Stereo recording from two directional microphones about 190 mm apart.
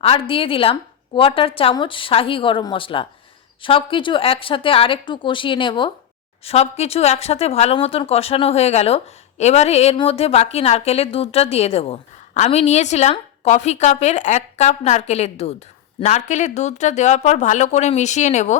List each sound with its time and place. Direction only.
0.0 s a woman's voice: 30° left (ahead or behind)